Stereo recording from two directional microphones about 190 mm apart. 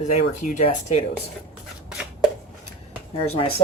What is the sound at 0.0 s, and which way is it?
Speech, 40° left (ahead or behind).